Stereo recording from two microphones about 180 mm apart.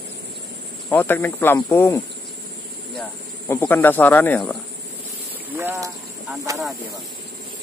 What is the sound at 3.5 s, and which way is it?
Speech, 10° left (ahead or behind).